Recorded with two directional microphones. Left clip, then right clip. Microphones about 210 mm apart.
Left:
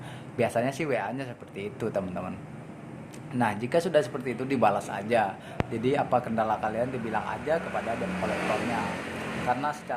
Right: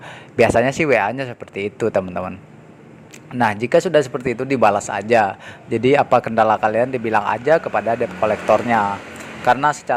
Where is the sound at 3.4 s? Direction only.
35° right (ahead or behind).